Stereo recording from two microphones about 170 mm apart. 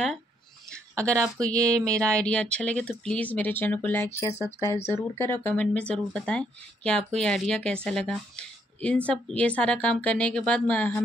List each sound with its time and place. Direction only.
0.9 s speech: 5° left (ahead or behind)